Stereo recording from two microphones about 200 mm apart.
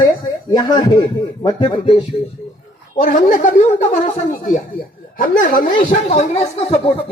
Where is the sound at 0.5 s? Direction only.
20° left (ahead or behind).